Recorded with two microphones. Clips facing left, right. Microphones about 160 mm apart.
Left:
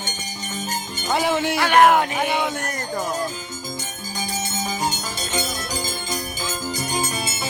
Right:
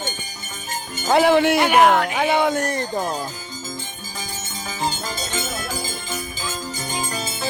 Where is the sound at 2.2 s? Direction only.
65° right (ahead or behind).